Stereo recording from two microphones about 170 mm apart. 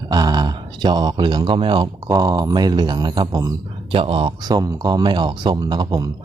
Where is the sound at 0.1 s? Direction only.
25° right (ahead or behind).